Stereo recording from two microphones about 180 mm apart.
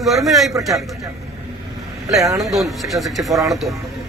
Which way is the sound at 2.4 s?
Centre (ahead or behind).